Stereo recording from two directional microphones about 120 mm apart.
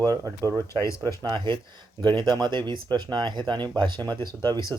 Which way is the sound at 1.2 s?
40° right (ahead or behind).